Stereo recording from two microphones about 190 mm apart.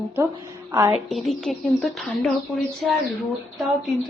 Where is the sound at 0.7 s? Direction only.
20° right (ahead or behind).